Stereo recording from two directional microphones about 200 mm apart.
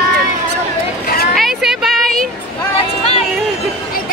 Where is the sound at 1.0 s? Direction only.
50° left (ahead or behind).